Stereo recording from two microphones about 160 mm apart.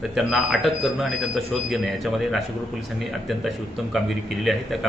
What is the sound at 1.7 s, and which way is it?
Speech, centre (ahead or behind).